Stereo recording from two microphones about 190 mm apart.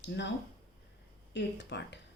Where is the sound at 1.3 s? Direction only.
65° left (ahead or behind).